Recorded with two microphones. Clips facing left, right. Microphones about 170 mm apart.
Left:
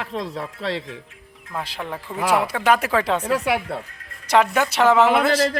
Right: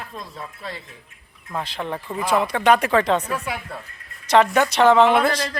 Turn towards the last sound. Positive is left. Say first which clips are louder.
# right 1 dB
turn(degrees=5)  # may be behind; listen again after turning